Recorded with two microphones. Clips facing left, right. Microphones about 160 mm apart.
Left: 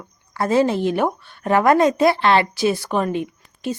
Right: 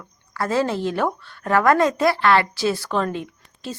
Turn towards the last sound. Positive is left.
turn(degrees=15)  # may be behind; listen again after turning